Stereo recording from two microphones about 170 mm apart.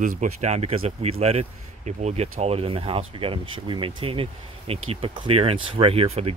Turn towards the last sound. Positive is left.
turn(degrees=-35)  # may be behind; listen again after turning